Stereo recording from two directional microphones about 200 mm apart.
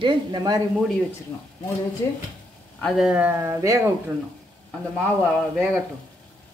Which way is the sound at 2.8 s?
Centre (ahead or behind).